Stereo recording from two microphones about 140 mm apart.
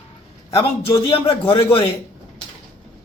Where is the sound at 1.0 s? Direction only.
40° left (ahead or behind).